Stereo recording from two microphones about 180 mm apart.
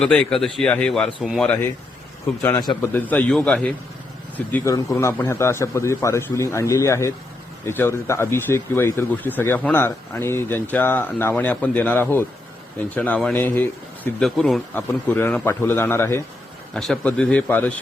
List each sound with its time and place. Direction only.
0.0 s a man's voice: 5° left (ahead or behind)
16.7 s speech: 5° left (ahead or behind)